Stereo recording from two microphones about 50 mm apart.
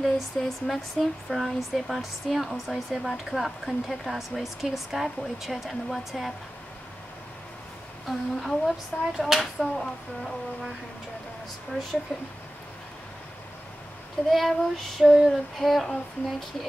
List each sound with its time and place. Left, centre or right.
0.0 s speech: centre
8.1 s speech: centre
12.1 s speech: centre
14.3 s speech: centre